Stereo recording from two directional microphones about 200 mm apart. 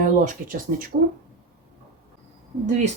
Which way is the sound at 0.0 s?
45° right (ahead or behind).